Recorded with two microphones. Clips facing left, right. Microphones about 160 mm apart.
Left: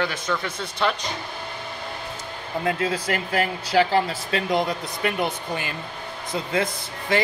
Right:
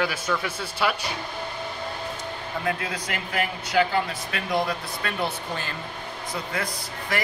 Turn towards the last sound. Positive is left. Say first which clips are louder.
# left 5 dB
turn(degrees=25)  # may be behind; listen again after turning